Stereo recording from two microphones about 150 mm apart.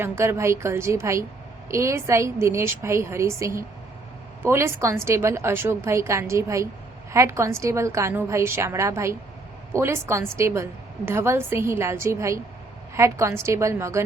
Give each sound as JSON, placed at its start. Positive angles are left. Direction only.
{"t": 0.0, "sound": "a woman's voice", "side_deg": -15}